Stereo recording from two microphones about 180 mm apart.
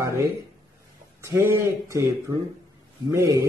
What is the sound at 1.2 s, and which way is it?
Speech, 15° right (ahead or behind).